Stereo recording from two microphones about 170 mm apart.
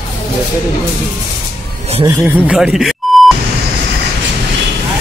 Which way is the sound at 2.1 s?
10° right (ahead or behind).